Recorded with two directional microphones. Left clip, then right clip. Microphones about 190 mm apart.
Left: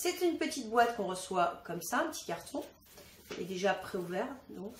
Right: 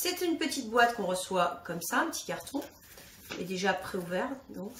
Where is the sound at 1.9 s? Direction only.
10° left (ahead or behind).